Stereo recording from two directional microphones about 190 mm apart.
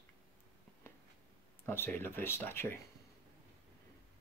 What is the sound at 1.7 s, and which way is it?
Speech, 10° left (ahead or behind).